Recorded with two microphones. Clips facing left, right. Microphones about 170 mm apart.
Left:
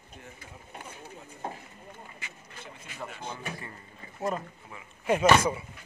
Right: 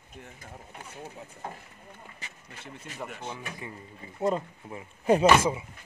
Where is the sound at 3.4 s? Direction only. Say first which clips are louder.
Even; 15° right (ahead or behind).